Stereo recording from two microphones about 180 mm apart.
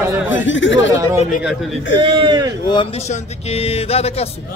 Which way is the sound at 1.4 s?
Centre (ahead or behind).